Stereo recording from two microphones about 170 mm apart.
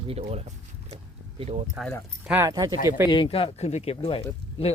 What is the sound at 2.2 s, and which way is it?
Speech, 10° right (ahead or behind).